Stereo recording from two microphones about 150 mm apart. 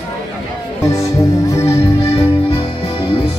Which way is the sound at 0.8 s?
20° left (ahead or behind).